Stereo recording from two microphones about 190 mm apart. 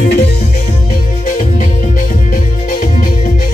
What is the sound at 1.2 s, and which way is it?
Music, 45° left (ahead or behind).